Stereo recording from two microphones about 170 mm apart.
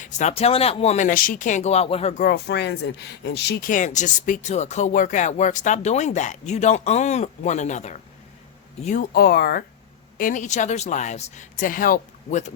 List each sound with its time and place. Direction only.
0.0 s speech: 40° left (ahead or behind)
2.2 s speech: 85° left
3.7 s speech: 45° left (ahead or behind)
9.1 s speech: 65° left (ahead or behind)
10.2 s speech: 50° left (ahead or behind)